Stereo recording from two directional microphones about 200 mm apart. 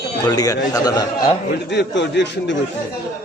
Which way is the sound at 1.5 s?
60° left (ahead or behind).